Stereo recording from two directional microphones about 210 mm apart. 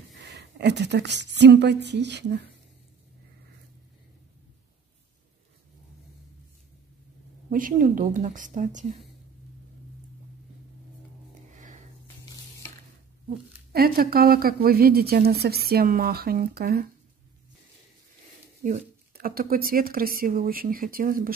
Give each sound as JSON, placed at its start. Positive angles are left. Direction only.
{"t": 0.1, "sound": "speech", "side_deg": -55}
{"t": 7.5, "sound": "speech", "side_deg": -40}
{"t": 11.5, "sound": "a sound", "side_deg": -35}
{"t": 13.7, "sound": "a woman's voice", "side_deg": -45}
{"t": 18.6, "sound": "a woman's voice", "side_deg": -45}